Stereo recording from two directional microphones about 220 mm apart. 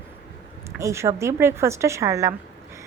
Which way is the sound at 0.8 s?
10° right (ahead or behind).